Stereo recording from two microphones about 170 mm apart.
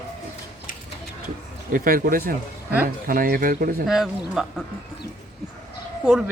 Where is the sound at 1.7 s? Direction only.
55° right (ahead or behind).